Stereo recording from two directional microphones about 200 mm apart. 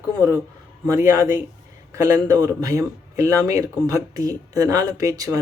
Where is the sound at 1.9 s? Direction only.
15° right (ahead or behind).